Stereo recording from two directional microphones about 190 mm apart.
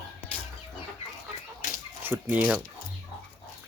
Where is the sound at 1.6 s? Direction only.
40° left (ahead or behind).